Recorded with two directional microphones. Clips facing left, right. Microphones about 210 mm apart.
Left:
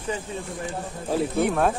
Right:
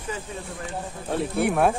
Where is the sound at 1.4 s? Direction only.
10° right (ahead or behind).